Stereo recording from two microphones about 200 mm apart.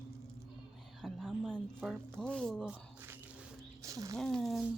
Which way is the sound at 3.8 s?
15° right (ahead or behind).